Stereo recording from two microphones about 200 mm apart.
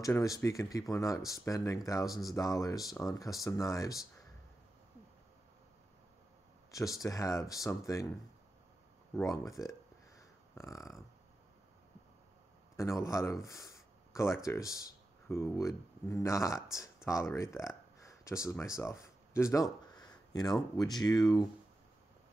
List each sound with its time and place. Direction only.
0.0 s speech: 15° left (ahead or behind)
6.7 s speech: 15° left (ahead or behind)
9.1 s a sound: 15° left (ahead or behind)
12.7 s speech: 15° left (ahead or behind)
16.5 s speech: centre (ahead or behind)
16.8 s a sound: 15° left (ahead or behind)
18.5 s speech: 15° left (ahead or behind)
20.0 s a sound: 20° left (ahead or behind)
20.7 s speech: 20° left (ahead or behind)